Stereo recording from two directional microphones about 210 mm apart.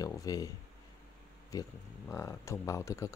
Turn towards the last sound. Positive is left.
turn(degrees=15)  # may be behind; listen again after turning